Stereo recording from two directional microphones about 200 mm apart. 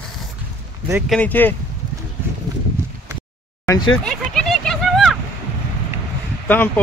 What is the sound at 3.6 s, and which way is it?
Speech, 20° left (ahead or behind).